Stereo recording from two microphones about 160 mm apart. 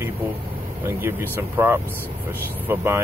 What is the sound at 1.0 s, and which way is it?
Speech, 15° right (ahead or behind).